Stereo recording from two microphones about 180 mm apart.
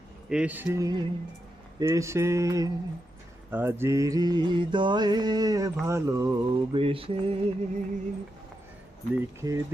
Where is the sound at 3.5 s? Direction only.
10° right (ahead or behind).